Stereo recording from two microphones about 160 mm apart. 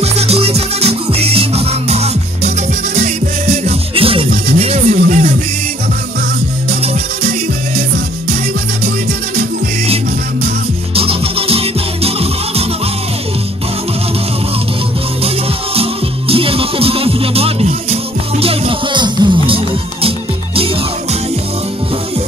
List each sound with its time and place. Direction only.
0.0 s music: 40° right (ahead or behind)
11.0 s music: 35° right (ahead or behind)
15.2 s music: 35° right (ahead or behind)